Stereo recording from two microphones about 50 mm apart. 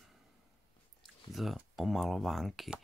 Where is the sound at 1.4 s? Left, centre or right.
Centre.